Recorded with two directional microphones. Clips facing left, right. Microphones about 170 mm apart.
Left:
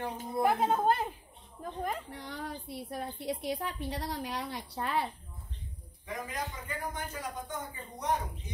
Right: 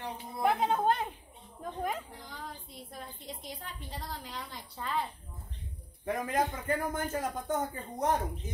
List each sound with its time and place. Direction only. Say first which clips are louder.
0.0 s a sound: left 3 dB; 50° left (ahead or behind)
0.5 s a woman's voice: even; 5° left (ahead or behind)
2.0 s a woman's voice: left 5 dB; 70° left (ahead or behind)
6.0 s a man's voice: right 7 dB; 55° right (ahead or behind)